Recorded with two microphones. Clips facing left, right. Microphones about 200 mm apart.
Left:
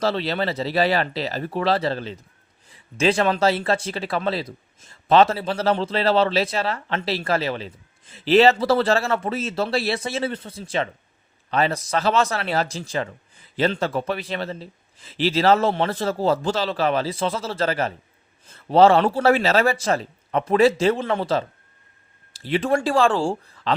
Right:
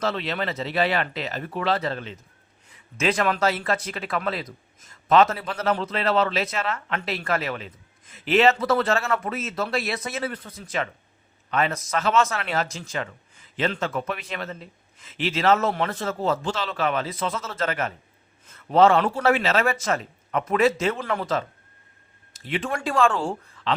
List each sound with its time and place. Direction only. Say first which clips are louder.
0.0 s speech: left 4 dB; 35° left (ahead or behind)